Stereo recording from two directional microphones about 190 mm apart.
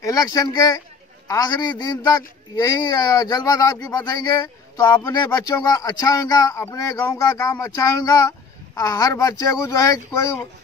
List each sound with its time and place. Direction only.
0.0 s speech: 20° left (ahead or behind)